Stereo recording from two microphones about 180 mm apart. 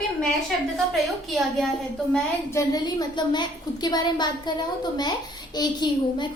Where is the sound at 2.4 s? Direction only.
20° left (ahead or behind).